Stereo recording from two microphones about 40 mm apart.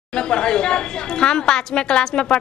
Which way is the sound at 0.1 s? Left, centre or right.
Left.